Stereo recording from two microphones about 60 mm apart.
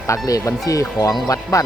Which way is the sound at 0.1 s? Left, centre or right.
Left.